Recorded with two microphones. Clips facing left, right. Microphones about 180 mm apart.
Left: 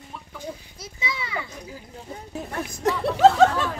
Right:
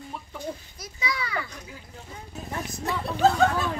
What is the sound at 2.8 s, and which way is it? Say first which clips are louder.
Speech: left 6 dB; 90° left.